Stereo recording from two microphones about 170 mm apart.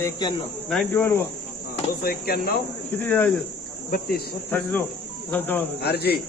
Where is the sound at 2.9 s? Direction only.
10° left (ahead or behind).